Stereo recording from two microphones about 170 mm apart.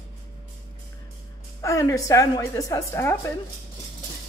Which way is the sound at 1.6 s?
20° left (ahead or behind).